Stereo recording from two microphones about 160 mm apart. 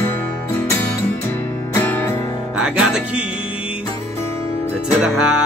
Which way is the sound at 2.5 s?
5° right (ahead or behind).